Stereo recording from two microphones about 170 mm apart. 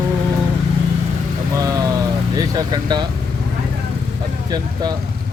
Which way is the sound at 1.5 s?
20° right (ahead or behind).